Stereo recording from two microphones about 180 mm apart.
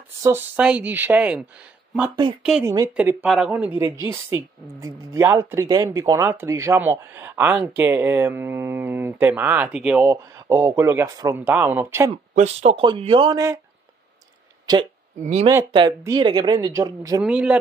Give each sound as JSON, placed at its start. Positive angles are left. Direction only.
{"t": 0.2, "sound": "a woman's voice", "side_deg": -10}
{"t": 2.6, "sound": "a woman's voice", "side_deg": -20}
{"t": 10.0, "sound": "a woman's voice", "side_deg": -15}
{"t": 12.4, "sound": "speech", "side_deg": -35}
{"t": 14.7, "sound": "speech", "side_deg": -25}
{"t": 16.0, "sound": "speech", "side_deg": -25}
{"t": 17.2, "sound": "a woman's voice", "side_deg": -5}